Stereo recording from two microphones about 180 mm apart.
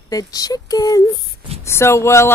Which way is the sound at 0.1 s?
20° left (ahead or behind).